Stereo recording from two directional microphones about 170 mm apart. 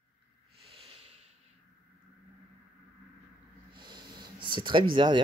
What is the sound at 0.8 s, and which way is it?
Snort, 35° right (ahead or behind).